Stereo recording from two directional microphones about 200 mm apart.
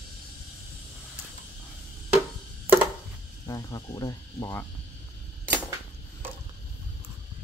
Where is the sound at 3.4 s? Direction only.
20° left (ahead or behind).